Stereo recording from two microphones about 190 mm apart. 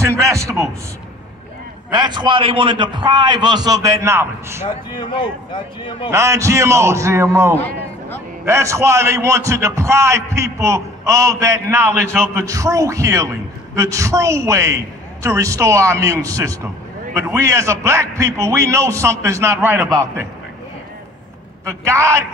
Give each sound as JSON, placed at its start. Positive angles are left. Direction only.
{"t": 0.0, "sound": "a man's voice", "side_deg": -15}
{"t": 1.9, "sound": "a man's voice", "side_deg": -25}
{"t": 4.6, "sound": "speech", "side_deg": 25}
{"t": 6.0, "sound": "a man's voice", "side_deg": -15}
{"t": 21.6, "sound": "a man's voice", "side_deg": -15}